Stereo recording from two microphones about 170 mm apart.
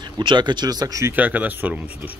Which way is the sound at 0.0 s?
25° right (ahead or behind).